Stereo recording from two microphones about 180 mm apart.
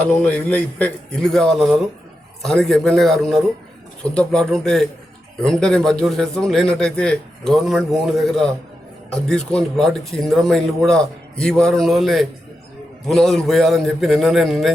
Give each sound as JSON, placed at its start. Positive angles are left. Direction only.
{"t": 0.0, "sound": "speech", "side_deg": 5}